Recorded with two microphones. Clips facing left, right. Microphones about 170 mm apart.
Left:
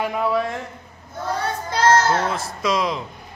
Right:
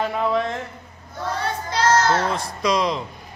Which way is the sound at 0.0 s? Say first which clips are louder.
Even; 10° left (ahead or behind).